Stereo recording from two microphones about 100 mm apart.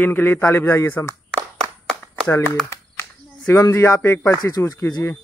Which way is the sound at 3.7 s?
25° left (ahead or behind).